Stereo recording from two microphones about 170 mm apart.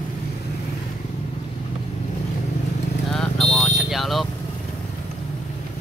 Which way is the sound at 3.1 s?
5° left (ahead or behind).